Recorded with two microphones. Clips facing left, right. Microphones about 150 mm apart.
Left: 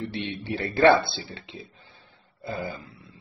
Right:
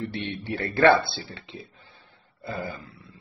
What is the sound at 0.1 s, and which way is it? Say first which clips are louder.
Speech: even; 20° left (ahead or behind).